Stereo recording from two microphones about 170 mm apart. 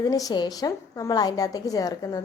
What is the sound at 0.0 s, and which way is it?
A woman's voice, 20° left (ahead or behind).